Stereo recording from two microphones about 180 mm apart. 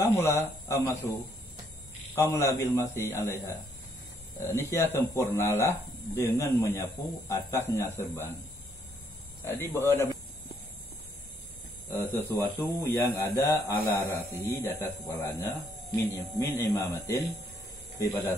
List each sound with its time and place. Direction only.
0.0 s speech: 15° left (ahead or behind)
2.1 s speech: 15° left (ahead or behind)
9.4 s speech: 15° left (ahead or behind)
11.9 s speech: 15° left (ahead or behind)
16.6 s speech: 15° left (ahead or behind)